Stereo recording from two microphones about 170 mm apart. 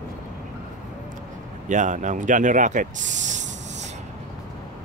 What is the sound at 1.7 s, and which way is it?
Speech, 45° right (ahead or behind).